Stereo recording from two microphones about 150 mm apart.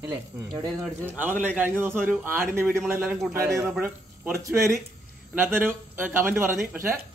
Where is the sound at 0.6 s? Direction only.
15° right (ahead or behind).